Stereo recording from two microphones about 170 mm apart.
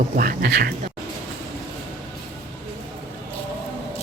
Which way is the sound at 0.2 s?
60° right (ahead or behind).